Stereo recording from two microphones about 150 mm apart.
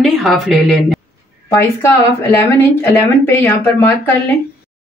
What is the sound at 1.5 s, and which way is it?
Speech, 20° left (ahead or behind).